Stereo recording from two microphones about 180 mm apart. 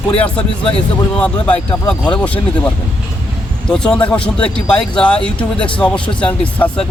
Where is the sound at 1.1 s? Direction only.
5° left (ahead or behind).